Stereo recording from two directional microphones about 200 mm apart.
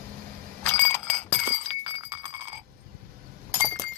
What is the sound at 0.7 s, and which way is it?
Bicycle bell, 10° left (ahead or behind).